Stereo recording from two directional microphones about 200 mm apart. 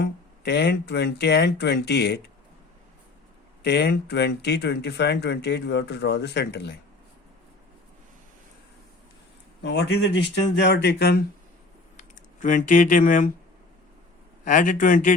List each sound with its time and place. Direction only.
0.0 s speech: 55° left (ahead or behind)
3.6 s speech: 55° left (ahead or behind)
9.6 s speech: 55° left (ahead or behind)
11.9 s speech: 40° left (ahead or behind)
14.4 s speech: 40° left (ahead or behind)